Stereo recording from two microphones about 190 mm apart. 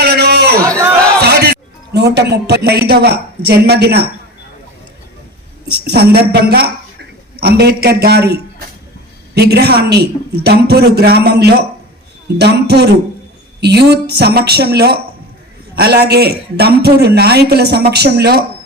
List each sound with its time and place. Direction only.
0.0 s a sound: 60° right (ahead or behind)
1.2 s speech: 60° right (ahead or behind)
5.7 s a man's voice: 55° right (ahead or behind)